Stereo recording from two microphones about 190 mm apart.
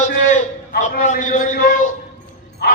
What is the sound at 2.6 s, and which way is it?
Dog, 60° left (ahead or behind).